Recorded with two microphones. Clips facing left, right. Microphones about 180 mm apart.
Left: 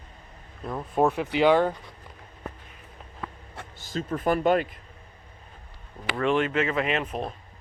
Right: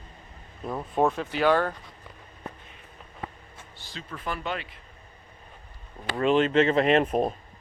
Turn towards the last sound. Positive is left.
turn(degrees=-40)  # may be behind; listen again after turning